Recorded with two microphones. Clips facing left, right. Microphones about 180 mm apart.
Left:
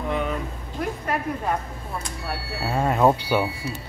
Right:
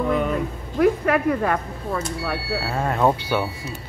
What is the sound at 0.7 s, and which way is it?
Speech, 90° right.